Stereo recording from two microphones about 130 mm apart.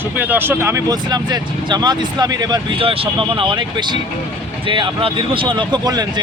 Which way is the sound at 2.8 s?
45° right (ahead or behind).